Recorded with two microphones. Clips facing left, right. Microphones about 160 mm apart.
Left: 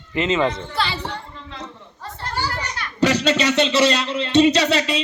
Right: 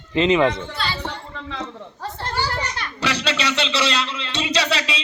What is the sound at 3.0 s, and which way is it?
Speech, 45° left (ahead or behind).